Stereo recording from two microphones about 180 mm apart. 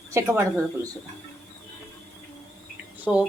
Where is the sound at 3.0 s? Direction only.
5° right (ahead or behind).